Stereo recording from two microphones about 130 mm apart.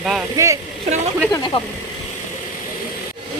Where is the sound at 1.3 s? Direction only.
30° left (ahead or behind).